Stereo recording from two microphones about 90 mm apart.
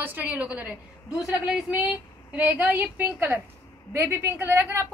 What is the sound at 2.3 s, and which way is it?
A woman's voice, 15° right (ahead or behind).